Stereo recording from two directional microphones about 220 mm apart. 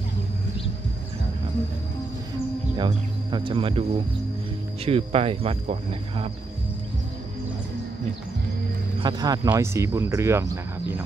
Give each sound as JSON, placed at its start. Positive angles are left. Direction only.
{"t": 2.8, "sound": "speech", "side_deg": -20}
{"t": 4.8, "sound": "speech", "side_deg": -25}
{"t": 9.0, "sound": "speech", "side_deg": -15}